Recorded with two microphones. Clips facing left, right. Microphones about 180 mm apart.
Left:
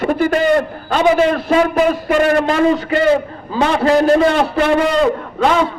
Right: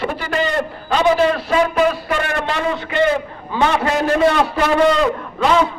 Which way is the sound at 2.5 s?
40° left (ahead or behind).